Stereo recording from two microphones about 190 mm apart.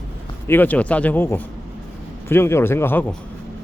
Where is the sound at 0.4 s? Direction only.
10° left (ahead or behind).